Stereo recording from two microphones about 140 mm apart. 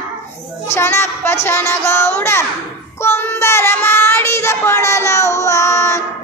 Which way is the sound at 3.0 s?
15° left (ahead or behind).